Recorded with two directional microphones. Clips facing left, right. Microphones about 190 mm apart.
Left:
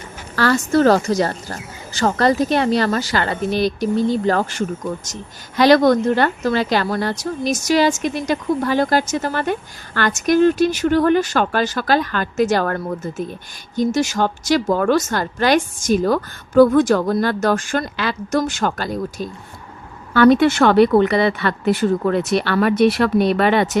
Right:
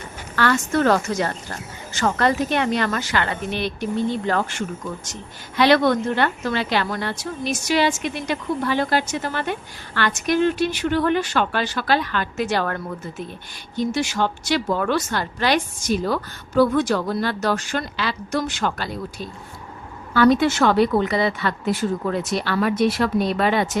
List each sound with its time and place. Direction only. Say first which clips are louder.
0.3 s a woman's voice: left 4 dB; 35° left (ahead or behind)
20.1 s speech: left 4 dB; 60° left (ahead or behind)